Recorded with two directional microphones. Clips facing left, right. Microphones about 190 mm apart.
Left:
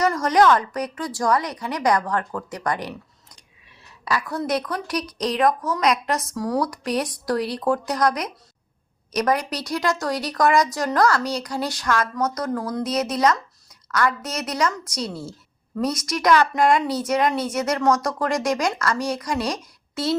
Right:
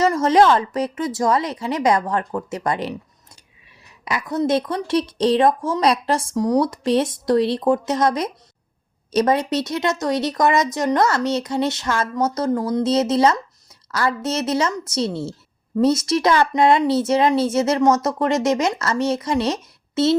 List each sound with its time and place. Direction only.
0.0 s a woman's voice: 25° right (ahead or behind)
4.0 s a woman's voice: 20° right (ahead or behind)